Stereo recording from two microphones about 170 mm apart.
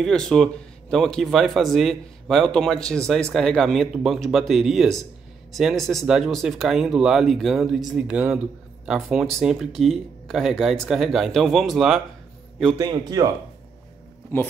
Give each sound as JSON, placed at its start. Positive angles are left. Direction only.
{"t": 0.0, "sound": "speech", "side_deg": 5}
{"t": 12.7, "sound": "speech", "side_deg": -25}
{"t": 14.3, "sound": "speech", "side_deg": 15}